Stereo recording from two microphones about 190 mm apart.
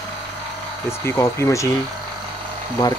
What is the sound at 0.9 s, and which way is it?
Speech, 15° left (ahead or behind).